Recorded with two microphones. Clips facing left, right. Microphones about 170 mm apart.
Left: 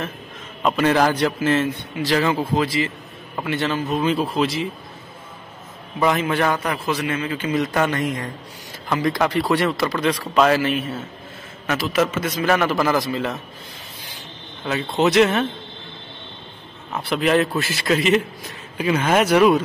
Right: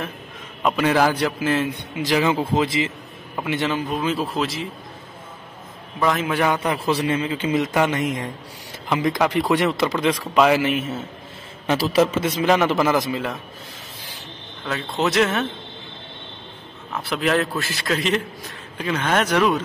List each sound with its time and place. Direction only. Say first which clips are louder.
0.6 s a man's voice: left 1 dB; 5° right (ahead or behind)
5.9 s a man's voice: left 1 dB; centre (ahead or behind)
6.9 s speech: right 2 dB; 30° right (ahead or behind); by 11.1 s 15° right (ahead or behind)
11.6 s speech: right 2 dB; 30° right (ahead or behind)
14.7 s a man's voice: left 4 dB; centre (ahead or behind)
16.9 s a man's voice: left 3 dB; centre (ahead or behind)